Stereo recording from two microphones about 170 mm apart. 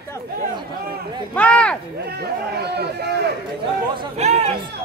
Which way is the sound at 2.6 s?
75° right (ahead or behind).